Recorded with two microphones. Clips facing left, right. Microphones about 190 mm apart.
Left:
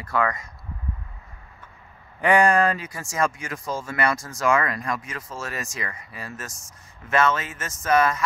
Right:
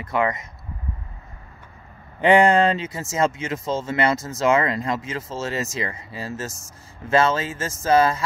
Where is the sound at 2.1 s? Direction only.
25° right (ahead or behind).